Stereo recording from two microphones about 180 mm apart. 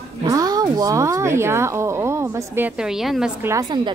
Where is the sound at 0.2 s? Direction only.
20° right (ahead or behind); by 3.3 s centre (ahead or behind).